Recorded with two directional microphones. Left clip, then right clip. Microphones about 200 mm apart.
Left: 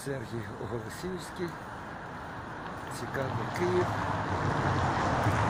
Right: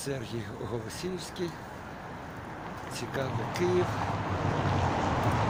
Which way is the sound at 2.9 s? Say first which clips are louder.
Right 1 dB; centre (ahead or behind).